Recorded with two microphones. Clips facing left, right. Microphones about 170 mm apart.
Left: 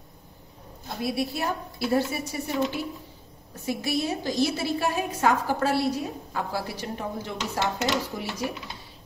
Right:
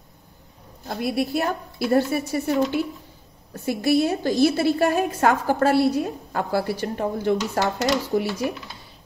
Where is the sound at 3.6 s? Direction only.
60° right (ahead or behind).